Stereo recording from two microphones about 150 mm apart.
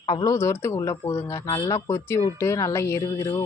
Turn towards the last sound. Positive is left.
turn(degrees=20)  # may be behind; listen again after turning